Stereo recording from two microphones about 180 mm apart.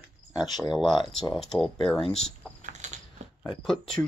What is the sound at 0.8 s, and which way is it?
Speech, centre (ahead or behind).